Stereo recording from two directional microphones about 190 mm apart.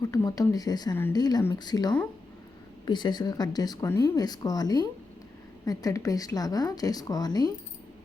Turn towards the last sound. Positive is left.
turn(degrees=20)  # may be behind; listen again after turning